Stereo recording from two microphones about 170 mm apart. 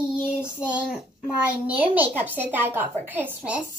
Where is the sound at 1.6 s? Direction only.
10° right (ahead or behind).